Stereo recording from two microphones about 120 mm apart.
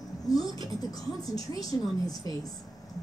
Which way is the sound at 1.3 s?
30° left (ahead or behind).